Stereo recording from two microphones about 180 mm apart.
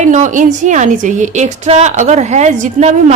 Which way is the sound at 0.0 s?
45° right (ahead or behind).